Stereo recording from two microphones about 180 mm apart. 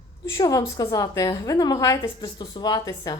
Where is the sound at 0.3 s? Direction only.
20° left (ahead or behind).